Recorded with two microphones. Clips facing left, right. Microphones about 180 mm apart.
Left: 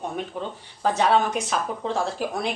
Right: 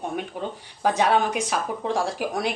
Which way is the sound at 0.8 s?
10° right (ahead or behind).